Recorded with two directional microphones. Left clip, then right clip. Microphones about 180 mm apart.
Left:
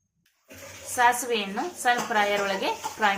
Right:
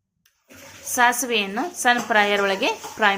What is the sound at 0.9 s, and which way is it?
A woman's voice, 45° right (ahead or behind).